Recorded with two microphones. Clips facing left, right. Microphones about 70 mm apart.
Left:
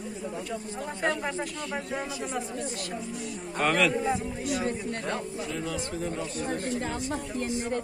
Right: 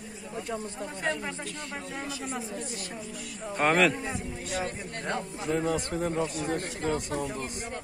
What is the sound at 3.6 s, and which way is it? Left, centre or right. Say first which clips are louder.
Speech: right 1 dB; right.